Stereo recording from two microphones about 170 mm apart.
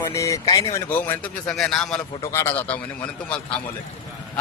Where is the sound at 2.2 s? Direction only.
15° left (ahead or behind).